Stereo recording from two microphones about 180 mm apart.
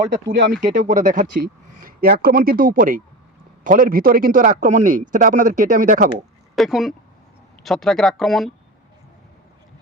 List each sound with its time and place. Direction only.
0.1 s speech: 55° right (ahead or behind)
0.6 s a man's voice: 45° right (ahead or behind)
6.6 s speech: centre (ahead or behind)